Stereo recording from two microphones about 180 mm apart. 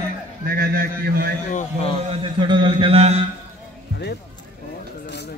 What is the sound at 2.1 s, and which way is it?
A man's voice, 25° right (ahead or behind).